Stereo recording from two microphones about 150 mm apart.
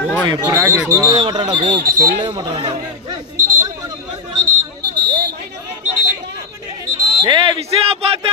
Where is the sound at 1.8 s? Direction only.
70° right (ahead or behind).